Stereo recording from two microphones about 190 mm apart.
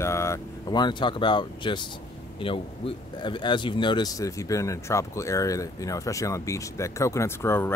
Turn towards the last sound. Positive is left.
turn(degrees=15)  # may be behind; listen again after turning